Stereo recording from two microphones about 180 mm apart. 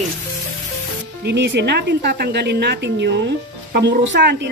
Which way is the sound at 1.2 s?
75° right (ahead or behind).